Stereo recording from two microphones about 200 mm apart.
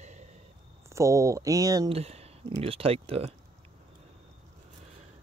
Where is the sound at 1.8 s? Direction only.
30° right (ahead or behind).